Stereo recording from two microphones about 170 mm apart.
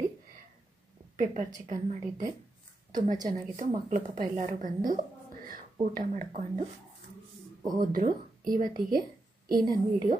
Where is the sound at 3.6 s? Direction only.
50° right (ahead or behind).